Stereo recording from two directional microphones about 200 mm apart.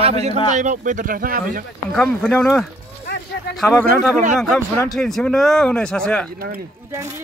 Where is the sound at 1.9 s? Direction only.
Centre (ahead or behind).